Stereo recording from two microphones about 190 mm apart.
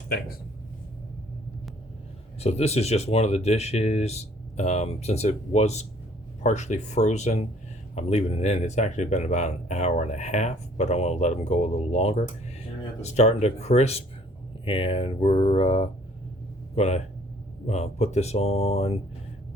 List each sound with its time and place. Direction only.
2.4 s speech: 35° left (ahead or behind)